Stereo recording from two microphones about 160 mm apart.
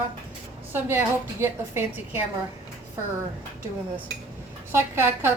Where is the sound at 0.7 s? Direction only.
15° right (ahead or behind).